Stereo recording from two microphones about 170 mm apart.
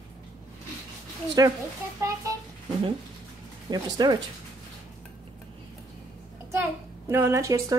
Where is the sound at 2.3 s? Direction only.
20° right (ahead or behind).